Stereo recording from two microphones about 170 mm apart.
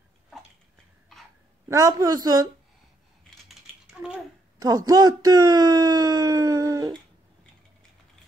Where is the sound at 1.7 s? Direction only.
20° right (ahead or behind).